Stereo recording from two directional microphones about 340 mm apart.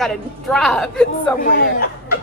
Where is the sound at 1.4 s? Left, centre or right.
Left.